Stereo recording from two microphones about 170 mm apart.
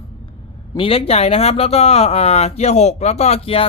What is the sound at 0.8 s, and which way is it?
Speech, 35° left (ahead or behind).